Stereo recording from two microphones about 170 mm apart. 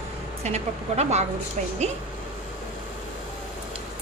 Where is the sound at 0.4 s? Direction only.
40° right (ahead or behind).